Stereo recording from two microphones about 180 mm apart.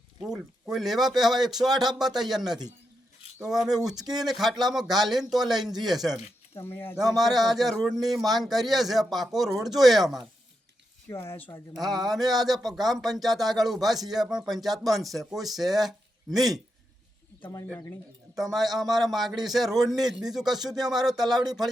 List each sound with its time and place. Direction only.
0.2 s a man's voice: 5° right (ahead or behind)
6.6 s speech: 10° left (ahead or behind)
7.1 s a man's voice: centre (ahead or behind)
11.3 s a man's voice: 10° left (ahead or behind)
17.4 s speech: 20° left (ahead or behind)
18.5 s a man's voice: centre (ahead or behind)